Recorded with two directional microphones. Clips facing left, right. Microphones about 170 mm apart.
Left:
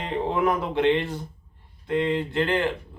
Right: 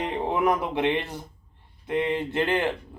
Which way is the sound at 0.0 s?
20° right (ahead or behind).